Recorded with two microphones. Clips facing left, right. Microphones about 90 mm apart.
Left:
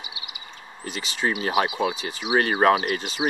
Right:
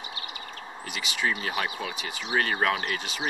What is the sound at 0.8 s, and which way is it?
Speech, 35° left (ahead or behind).